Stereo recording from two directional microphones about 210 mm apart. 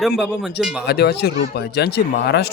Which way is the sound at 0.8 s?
50° left (ahead or behind).